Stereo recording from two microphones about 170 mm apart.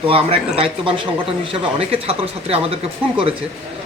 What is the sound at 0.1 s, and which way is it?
Speech, 35° right (ahead or behind).